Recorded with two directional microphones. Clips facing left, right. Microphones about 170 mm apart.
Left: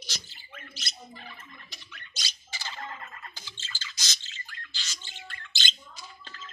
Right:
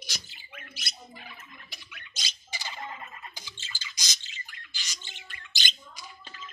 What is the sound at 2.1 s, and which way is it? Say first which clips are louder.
Squawk: right 2 dB; 15° right (ahead or behind).